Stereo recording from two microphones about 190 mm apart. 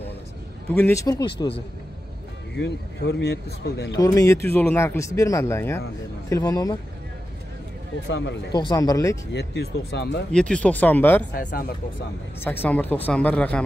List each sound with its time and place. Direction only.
0.7 s speech: 10° left (ahead or behind)
2.5 s speech: 65° left (ahead or behind)
3.9 s speech: 20° left (ahead or behind)
8.1 s speech: 70° left (ahead or behind)
8.5 s speech: 20° left (ahead or behind)
9.3 s speech: 60° left (ahead or behind)
10.3 s speech: 5° left (ahead or behind)
11.3 s speech: 50° left (ahead or behind)
12.4 s speech: 10° left (ahead or behind)